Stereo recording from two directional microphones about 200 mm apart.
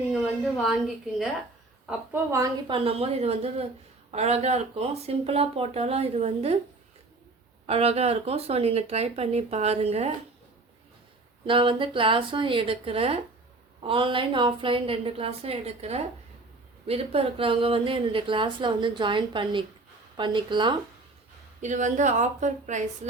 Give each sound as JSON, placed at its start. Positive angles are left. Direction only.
{"t": 0.1, "sound": "a sound", "side_deg": 0}
{"t": 1.9, "sound": "a woman's voice", "side_deg": -15}
{"t": 7.7, "sound": "speech", "side_deg": -30}
{"t": 11.4, "sound": "a woman's voice", "side_deg": -25}
{"t": 21.6, "sound": "speech", "side_deg": -40}